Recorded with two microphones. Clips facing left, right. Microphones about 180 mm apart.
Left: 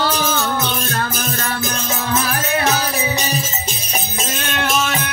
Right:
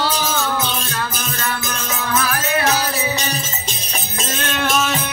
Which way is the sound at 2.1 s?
25° left (ahead or behind).